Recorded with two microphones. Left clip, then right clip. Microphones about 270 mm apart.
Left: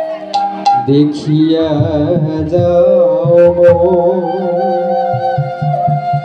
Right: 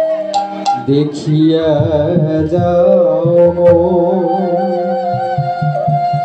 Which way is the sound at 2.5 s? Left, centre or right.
Left.